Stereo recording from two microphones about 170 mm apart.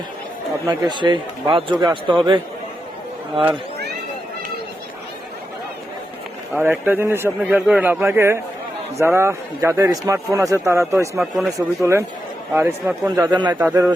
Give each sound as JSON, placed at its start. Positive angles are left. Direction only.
{"t": 0.6, "sound": "a man's voice", "side_deg": -20}
{"t": 6.6, "sound": "a man's voice", "side_deg": -10}
{"t": 11.2, "sound": "speech", "side_deg": 0}
{"t": 11.8, "sound": "a man's voice", "side_deg": -15}
{"t": 13.6, "sound": "a man's voice", "side_deg": -10}